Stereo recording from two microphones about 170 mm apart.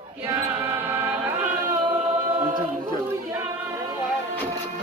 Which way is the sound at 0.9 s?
10° right (ahead or behind).